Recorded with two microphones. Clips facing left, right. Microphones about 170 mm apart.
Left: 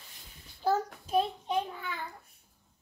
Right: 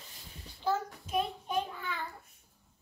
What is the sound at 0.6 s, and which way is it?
Child singing, 35° left (ahead or behind).